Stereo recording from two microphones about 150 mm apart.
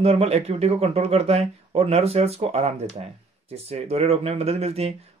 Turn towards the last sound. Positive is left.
turn(degrees=-45)  # may be behind; listen again after turning